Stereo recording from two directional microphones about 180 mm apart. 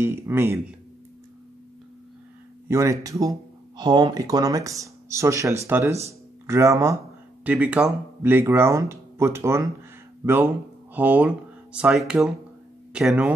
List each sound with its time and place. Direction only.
0.0 s speech: 15° right (ahead or behind)
2.7 s speech: 15° right (ahead or behind)